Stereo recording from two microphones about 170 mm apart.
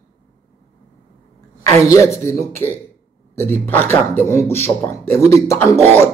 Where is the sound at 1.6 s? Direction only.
20° left (ahead or behind).